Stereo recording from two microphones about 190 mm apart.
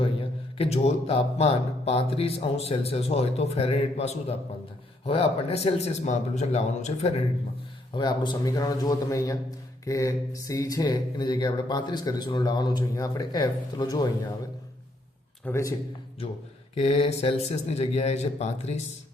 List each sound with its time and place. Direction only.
0.0 s a man's voice: 30° left (ahead or behind)
7.9 s speech: 25° left (ahead or behind)
15.4 s speech: 15° left (ahead or behind)
16.7 s a man's voice: 30° left (ahead or behind)